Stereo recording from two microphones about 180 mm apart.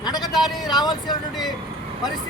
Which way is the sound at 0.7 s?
25° left (ahead or behind).